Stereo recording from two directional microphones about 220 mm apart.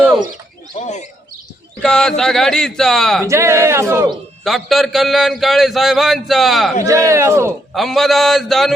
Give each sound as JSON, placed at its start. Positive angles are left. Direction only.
{"t": 0.8, "sound": "speech", "side_deg": 30}
{"t": 1.8, "sound": "a man's voice", "side_deg": 5}
{"t": 3.2, "sound": "speech", "side_deg": -15}
{"t": 4.4, "sound": "a man's voice", "side_deg": 0}
{"t": 6.8, "sound": "speech", "side_deg": -15}
{"t": 7.7, "sound": "a man's voice", "side_deg": 0}